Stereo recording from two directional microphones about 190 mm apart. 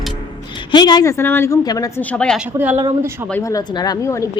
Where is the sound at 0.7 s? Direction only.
20° left (ahead or behind).